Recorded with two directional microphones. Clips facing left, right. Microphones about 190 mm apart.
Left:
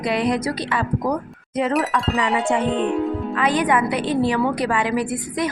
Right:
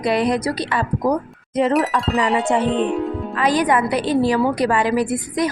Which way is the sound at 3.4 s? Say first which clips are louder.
Right 2 dB; 40° right (ahead or behind).